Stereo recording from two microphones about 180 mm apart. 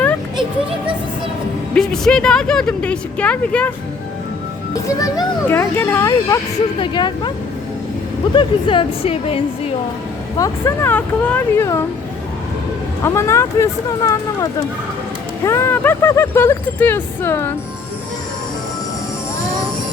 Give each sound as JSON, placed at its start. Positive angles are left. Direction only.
{"t": 1.7, "sound": "speech", "side_deg": 5}
{"t": 4.7, "sound": "speech", "side_deg": 20}
{"t": 8.4, "sound": "a woman's voice", "side_deg": 30}
{"t": 10.3, "sound": "speech", "side_deg": 20}
{"t": 13.0, "sound": "speech", "side_deg": 15}